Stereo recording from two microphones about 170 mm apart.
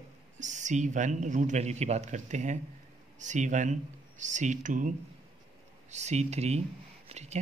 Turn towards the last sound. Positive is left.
turn(degrees=-40)  # may be behind; listen again after turning